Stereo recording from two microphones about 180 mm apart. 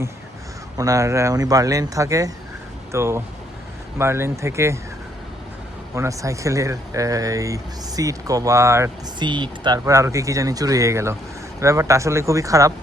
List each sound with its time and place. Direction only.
0.8 s speech: 20° right (ahead or behind)
5.9 s speech: 15° right (ahead or behind)